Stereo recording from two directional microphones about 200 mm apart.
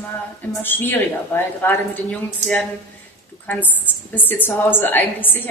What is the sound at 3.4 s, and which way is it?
A woman's voice, 10° left (ahead or behind).